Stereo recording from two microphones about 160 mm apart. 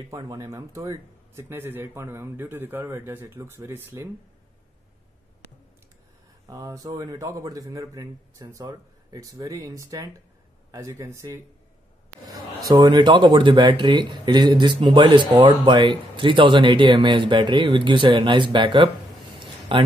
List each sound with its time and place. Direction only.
0.1 s speech: 20° right (ahead or behind)
6.4 s a man's voice: 20° right (ahead or behind)